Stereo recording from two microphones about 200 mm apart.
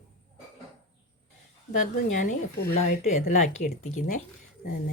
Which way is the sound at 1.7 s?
40° left (ahead or behind).